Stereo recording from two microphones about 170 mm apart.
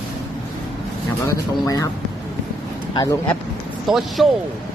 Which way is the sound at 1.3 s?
20° left (ahead or behind).